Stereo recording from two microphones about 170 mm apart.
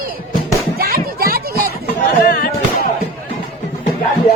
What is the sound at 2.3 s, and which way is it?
Music, 60° left (ahead or behind).